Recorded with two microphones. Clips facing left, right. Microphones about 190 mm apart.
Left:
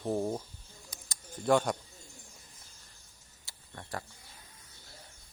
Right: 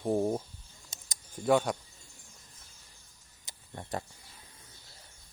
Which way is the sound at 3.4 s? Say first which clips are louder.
Right 4 dB; 20° right (ahead or behind).